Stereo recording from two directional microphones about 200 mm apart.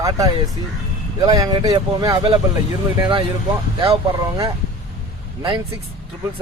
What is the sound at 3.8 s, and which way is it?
Speech, 20° right (ahead or behind).